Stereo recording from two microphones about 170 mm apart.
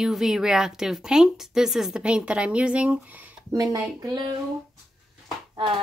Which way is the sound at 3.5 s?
20° right (ahead or behind).